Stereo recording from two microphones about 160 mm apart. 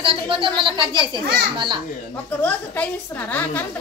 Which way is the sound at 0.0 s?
35° right (ahead or behind).